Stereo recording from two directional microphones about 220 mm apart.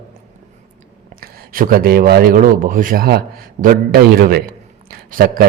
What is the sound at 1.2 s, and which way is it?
A man's voice, 40° right (ahead or behind).